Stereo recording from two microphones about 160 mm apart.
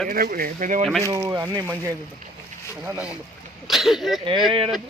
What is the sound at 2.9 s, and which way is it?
Speech, 5° right (ahead or behind).